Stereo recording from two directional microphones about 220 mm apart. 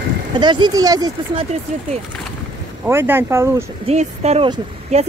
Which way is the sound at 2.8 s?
10° right (ahead or behind).